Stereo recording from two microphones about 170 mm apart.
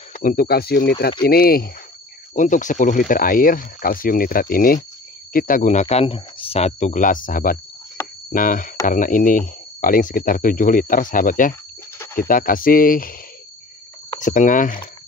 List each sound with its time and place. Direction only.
0.1 s speech: 50° left (ahead or behind)
2.3 s speech: 50° left (ahead or behind)
14.2 s speech: 50° left (ahead or behind)